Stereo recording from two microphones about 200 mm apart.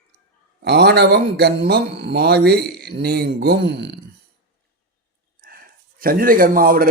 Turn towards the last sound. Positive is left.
turn(degrees=-45)  # may be behind; listen again after turning